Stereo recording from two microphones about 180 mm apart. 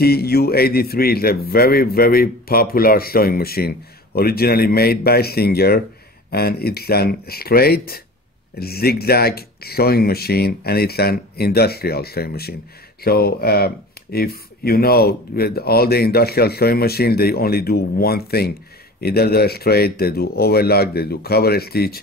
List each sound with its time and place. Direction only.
0.0 s a man's voice: 60° left (ahead or behind)